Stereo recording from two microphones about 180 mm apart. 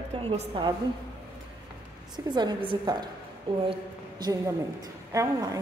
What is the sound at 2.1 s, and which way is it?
A woman's voice, 25° right (ahead or behind).